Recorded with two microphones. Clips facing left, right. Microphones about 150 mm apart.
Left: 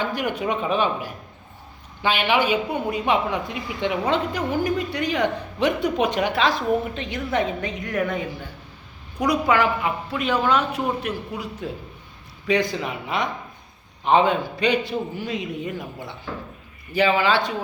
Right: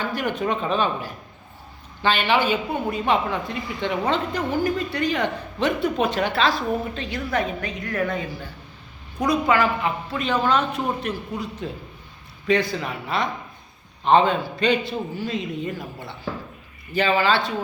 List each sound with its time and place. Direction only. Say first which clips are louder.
0.0 s a woman's voice: even; 15° left (ahead or behind)
9.1 s a woman's voice: even; 10° left (ahead or behind)